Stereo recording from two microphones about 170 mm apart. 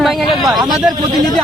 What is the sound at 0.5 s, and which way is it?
Speech, 25° right (ahead or behind).